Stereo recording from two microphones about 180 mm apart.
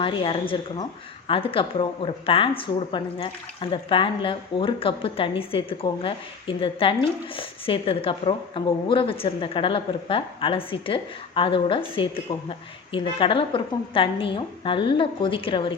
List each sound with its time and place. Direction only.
0.0 s speech: 30° left (ahead or behind)